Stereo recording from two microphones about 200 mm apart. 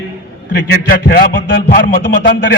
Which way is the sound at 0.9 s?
50° left (ahead or behind).